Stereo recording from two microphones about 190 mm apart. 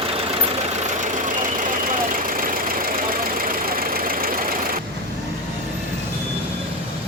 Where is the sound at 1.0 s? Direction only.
40° right (ahead or behind).